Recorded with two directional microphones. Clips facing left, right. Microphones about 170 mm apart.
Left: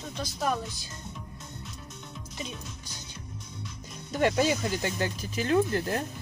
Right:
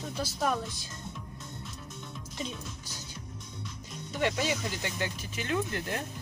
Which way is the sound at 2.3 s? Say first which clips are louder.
Right 1 dB; centre (ahead or behind).